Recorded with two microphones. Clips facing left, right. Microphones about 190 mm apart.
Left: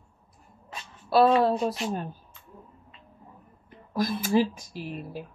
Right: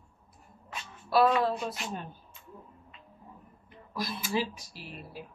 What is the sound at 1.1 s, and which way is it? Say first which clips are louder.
Speech: left 4 dB; 30° left (ahead or behind).